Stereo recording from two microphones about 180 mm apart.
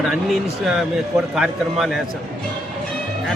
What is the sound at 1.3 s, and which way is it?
Speech, centre (ahead or behind).